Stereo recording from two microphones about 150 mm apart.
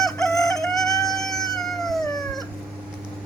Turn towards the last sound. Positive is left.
turn(degrees=0)  # may be behind; listen again after turning